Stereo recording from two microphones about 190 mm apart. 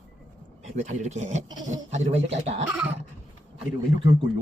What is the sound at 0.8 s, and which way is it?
Speech, 35° right (ahead or behind).